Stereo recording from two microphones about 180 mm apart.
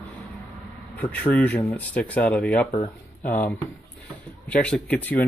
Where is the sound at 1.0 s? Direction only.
10° left (ahead or behind).